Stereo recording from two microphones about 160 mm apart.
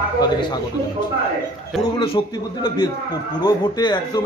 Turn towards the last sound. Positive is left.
turn(degrees=25)  # may be behind; listen again after turning